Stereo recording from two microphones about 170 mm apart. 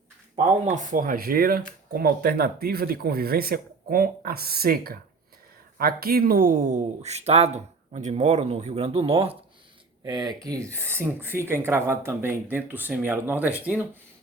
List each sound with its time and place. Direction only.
0.6 s speech: 45° right (ahead or behind)
10.0 s speech: 25° right (ahead or behind); by 13.8 s 10° right (ahead or behind)